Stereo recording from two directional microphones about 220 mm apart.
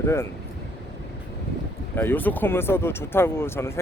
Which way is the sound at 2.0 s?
10° left (ahead or behind).